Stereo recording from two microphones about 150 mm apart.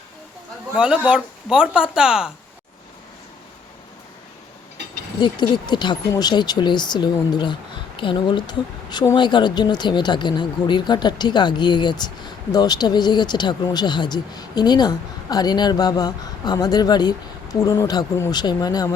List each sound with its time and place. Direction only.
0.8 s speech: 10° right (ahead or behind)
5.2 s speech: 30° left (ahead or behind)